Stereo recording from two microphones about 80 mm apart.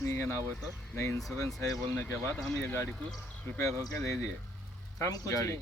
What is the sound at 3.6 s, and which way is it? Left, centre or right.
Speech, left.